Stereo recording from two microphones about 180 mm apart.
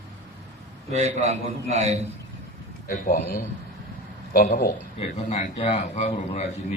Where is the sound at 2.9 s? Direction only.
55° left (ahead or behind).